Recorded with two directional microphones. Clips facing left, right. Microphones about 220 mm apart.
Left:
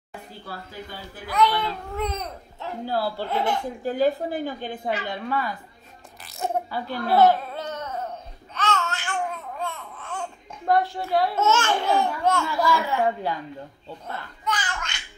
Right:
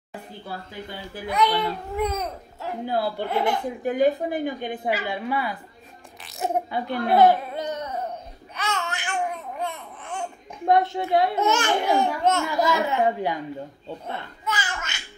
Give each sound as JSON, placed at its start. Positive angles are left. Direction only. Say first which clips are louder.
{"t": 1.1, "sound": "a woman's voice", "louder": "even", "side_deg": -20}
{"t": 2.8, "sound": "a man's voice", "louder": "right 1 dB", "side_deg": -20}
{"t": 3.3, "sound": "speech", "louder": "right 2 dB", "side_deg": -55}
{"t": 3.8, "sound": "a woman's voice", "louder": "right 2 dB", "side_deg": -20}
{"t": 6.2, "sound": "a sound", "louder": "right 1 dB", "side_deg": 0}
{"t": 6.7, "sound": "speech", "louder": "right 2 dB", "side_deg": -20}
{"t": 8.5, "sound": "a sound", "louder": "left 3 dB", "side_deg": -15}
{"t": 9.6, "sound": "speech", "louder": "right 1 dB", "side_deg": -15}
{"t": 14.4, "sound": "a sound", "louder": "left 2 dB", "side_deg": -5}